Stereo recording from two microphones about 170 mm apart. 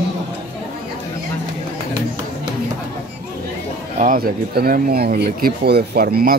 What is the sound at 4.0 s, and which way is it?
Speech, 55° right (ahead or behind).